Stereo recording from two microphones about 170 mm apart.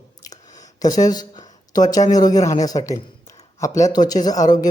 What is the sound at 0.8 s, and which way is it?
Speech, 20° left (ahead or behind).